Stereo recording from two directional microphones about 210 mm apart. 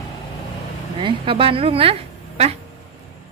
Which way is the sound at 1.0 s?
25° right (ahead or behind).